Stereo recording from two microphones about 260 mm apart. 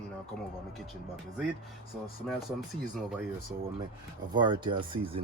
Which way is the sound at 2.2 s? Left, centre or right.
Centre.